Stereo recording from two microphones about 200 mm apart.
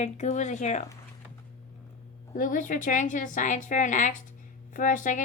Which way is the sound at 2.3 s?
40° left (ahead or behind).